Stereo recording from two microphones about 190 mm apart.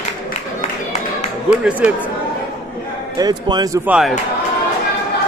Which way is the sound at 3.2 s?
20° right (ahead or behind).